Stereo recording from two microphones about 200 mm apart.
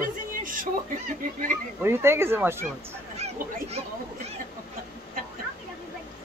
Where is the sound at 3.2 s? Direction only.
30° right (ahead or behind).